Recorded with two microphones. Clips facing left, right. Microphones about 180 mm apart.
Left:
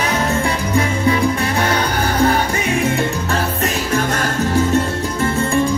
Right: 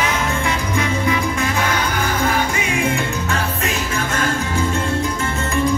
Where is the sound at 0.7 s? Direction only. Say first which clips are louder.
Left 4 dB; 35° left (ahead or behind).